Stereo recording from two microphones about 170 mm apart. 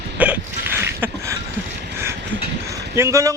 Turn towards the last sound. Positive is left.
turn(degrees=-15)  # may be behind; listen again after turning